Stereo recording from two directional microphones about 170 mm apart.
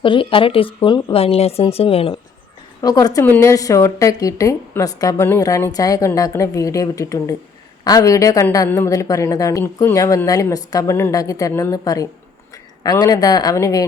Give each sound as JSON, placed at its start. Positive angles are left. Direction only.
{"t": 0.0, "sound": "speech", "side_deg": 30}
{"t": 2.8, "sound": "a woman's voice", "side_deg": 20}